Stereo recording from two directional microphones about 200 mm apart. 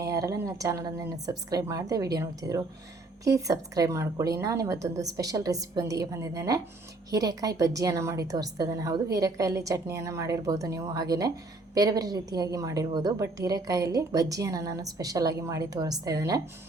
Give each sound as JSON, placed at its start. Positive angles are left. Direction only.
{"t": 0.0, "sound": "a woman's voice", "side_deg": -15}